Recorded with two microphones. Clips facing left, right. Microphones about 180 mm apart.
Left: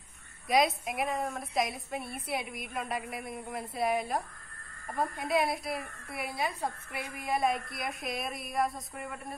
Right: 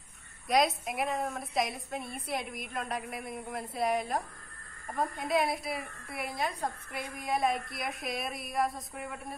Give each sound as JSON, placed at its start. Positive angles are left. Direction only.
{"t": 0.5, "sound": "a woman's voice", "side_deg": 0}